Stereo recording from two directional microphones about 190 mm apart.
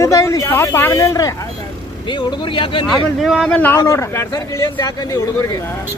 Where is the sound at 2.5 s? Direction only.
25° left (ahead or behind).